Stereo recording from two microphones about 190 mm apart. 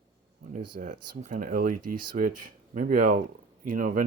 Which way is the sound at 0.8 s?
40° right (ahead or behind).